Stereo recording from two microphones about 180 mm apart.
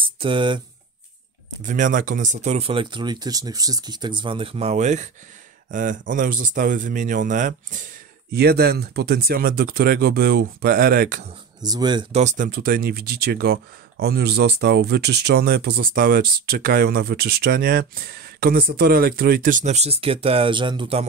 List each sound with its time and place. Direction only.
0.0 s speech: 30° right (ahead or behind)
1.6 s speech: 45° right (ahead or behind)
11.6 s speech: 20° right (ahead or behind)
12.1 s speech: 40° right (ahead or behind)